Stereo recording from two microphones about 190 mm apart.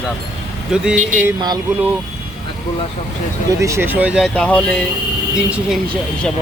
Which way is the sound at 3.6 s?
15° right (ahead or behind).